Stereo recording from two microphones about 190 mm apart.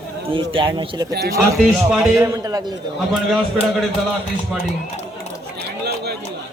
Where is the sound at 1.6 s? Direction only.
5° right (ahead or behind).